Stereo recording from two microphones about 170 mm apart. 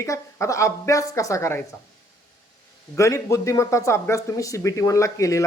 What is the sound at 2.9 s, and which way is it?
Speech, 15° left (ahead or behind).